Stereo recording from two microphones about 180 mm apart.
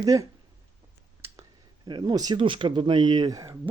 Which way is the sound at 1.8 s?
25° right (ahead or behind).